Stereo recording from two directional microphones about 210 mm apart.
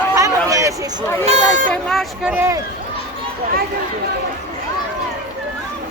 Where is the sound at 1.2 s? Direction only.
30° right (ahead or behind).